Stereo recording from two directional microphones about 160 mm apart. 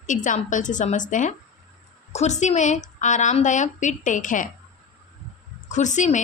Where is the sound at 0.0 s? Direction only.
50° left (ahead or behind).